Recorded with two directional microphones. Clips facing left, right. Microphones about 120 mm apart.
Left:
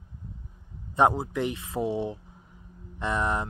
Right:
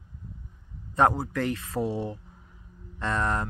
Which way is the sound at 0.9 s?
20° left (ahead or behind).